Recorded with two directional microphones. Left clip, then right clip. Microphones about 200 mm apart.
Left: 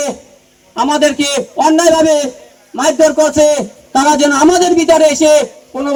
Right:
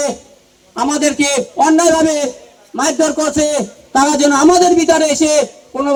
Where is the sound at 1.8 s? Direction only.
10° left (ahead or behind).